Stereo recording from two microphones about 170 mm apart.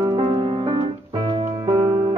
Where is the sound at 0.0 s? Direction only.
30° right (ahead or behind).